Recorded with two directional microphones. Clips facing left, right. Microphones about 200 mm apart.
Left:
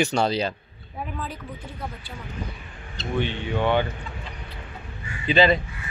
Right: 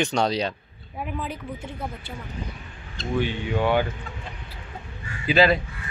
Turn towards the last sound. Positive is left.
turn(degrees=-5)  # may be behind; listen again after turning